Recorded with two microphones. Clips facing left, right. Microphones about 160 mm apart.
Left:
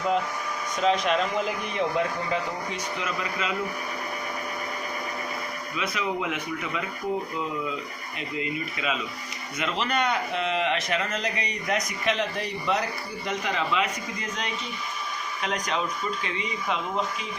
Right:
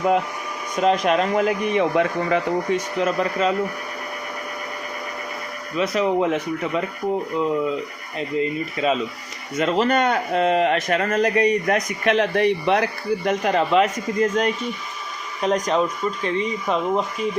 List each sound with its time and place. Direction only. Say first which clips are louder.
0.8 s speech: right 5 dB; 50° right (ahead or behind)
1.7 s speech: right 4 dB; 75° right (ahead or behind); by 3.5 s 40° right (ahead or behind)
5.7 s speech: right 10 dB; 40° right (ahead or behind)